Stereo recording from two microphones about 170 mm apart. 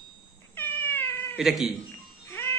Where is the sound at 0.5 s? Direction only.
10° left (ahead or behind).